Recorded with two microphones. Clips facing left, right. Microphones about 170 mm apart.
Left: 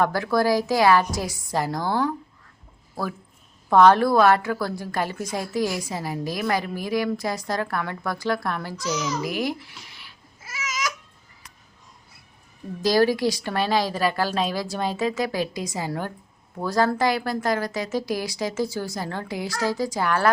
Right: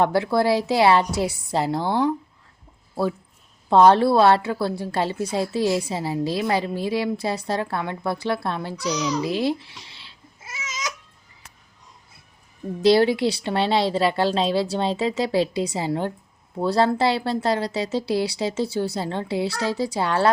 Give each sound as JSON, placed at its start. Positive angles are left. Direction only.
{"t": 0.0, "sound": "a woman's voice", "side_deg": -25}
{"t": 3.7, "sound": "a woman's voice", "side_deg": -25}
{"t": 9.2, "sound": "babbling", "side_deg": -25}
{"t": 12.8, "sound": "a woman's voice", "side_deg": -25}